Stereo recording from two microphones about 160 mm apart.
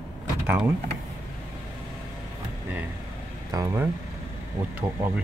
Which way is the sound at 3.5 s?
15° right (ahead or behind).